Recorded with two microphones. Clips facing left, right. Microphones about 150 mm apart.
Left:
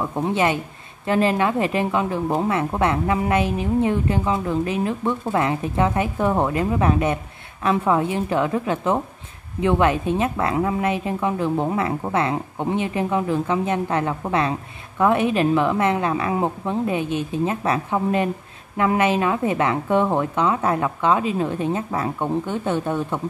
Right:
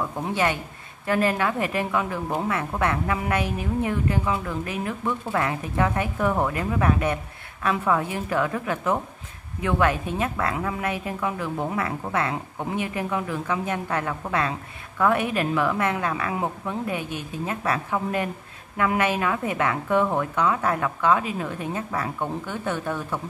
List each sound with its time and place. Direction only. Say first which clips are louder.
0.3 s a woman's voice: left 3 dB; 20° left (ahead or behind)